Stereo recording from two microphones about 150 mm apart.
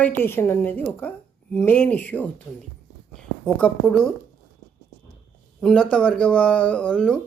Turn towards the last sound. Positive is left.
turn(degrees=5)  # may be behind; listen again after turning